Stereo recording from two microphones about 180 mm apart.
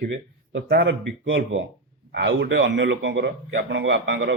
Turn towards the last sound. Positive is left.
turn(degrees=-85)